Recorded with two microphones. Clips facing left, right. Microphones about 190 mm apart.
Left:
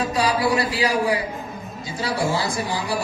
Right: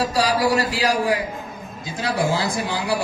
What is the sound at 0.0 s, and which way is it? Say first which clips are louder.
Speech: right 1 dB; 85° right.